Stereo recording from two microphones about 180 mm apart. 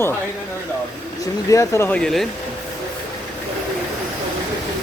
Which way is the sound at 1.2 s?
15° left (ahead or behind).